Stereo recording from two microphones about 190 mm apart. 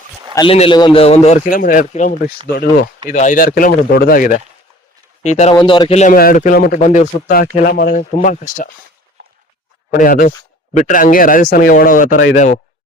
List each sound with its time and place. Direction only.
0.3 s a man's voice: 30° left (ahead or behind)
2.5 s speech: 55° left (ahead or behind)
3.1 s a man's voice: 40° left (ahead or behind)
5.5 s speech: 25° left (ahead or behind)
6.0 s speech: 45° left (ahead or behind)
9.9 s a man's voice: 50° left (ahead or behind)